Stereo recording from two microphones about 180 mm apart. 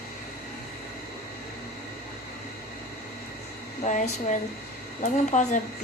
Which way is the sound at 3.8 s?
40° left (ahead or behind).